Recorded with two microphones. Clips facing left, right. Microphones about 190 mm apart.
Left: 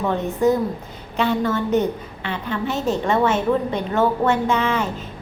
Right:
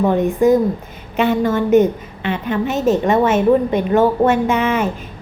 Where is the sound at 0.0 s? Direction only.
15° right (ahead or behind).